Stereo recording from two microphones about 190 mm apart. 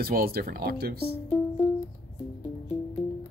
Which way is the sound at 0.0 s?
50° right (ahead or behind).